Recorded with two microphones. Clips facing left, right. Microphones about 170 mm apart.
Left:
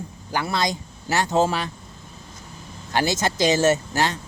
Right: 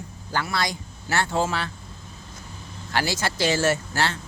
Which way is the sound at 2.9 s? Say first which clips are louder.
Left 3 dB; 20° left (ahead or behind).